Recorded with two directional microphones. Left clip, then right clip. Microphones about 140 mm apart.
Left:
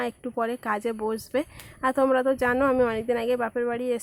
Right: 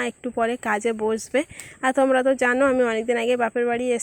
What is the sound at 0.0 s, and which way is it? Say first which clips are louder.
Speech: right 4 dB; 15° right (ahead or behind).